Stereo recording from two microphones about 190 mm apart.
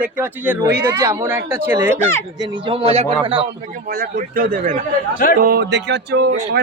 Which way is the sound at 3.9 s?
50° right (ahead or behind).